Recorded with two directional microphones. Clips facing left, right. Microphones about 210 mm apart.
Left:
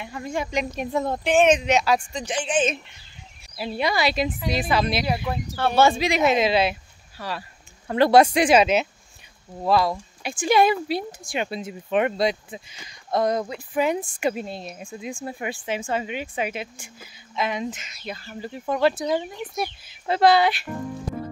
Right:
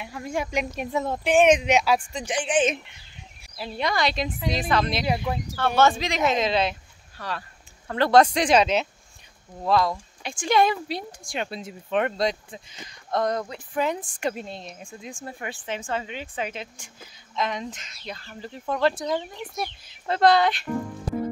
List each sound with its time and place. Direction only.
0.0 s speech: 5° right (ahead or behind)
3.5 s speech: 10° left (ahead or behind)